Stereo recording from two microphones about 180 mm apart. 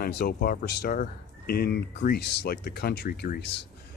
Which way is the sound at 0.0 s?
60° left (ahead or behind).